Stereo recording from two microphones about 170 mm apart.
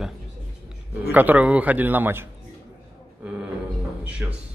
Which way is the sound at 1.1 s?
10° right (ahead or behind).